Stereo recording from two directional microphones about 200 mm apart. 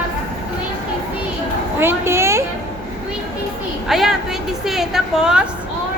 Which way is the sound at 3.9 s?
Centre (ahead or behind).